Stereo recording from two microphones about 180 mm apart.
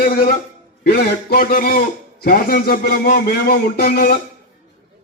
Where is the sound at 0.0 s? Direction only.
55° left (ahead or behind).